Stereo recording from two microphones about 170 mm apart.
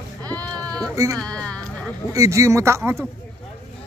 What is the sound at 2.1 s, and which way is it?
Speech, 20° right (ahead or behind).